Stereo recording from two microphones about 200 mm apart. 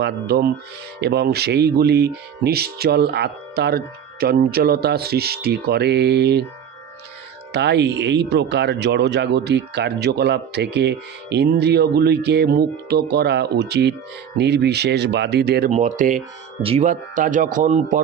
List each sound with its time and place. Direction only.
0.0 s speech: 50° right (ahead or behind)
7.5 s speech: 55° right (ahead or behind)
15.7 s speech: 40° right (ahead or behind)